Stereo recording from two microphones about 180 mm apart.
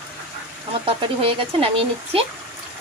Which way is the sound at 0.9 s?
30° right (ahead or behind).